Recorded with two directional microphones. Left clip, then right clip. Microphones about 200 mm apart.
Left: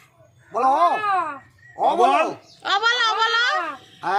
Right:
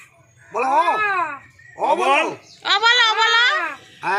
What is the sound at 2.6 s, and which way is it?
A child's voice, 35° left (ahead or behind).